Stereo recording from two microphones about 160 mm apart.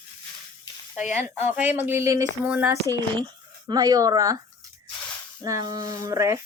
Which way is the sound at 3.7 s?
25° right (ahead or behind).